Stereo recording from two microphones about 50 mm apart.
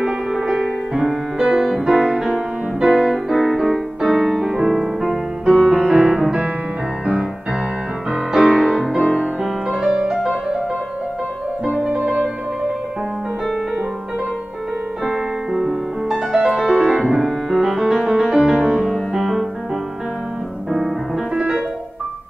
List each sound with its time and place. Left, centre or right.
0.0 s music: centre
8.6 s music: centre
11.8 s music: centre
15.0 s music: centre
18.9 s music: centre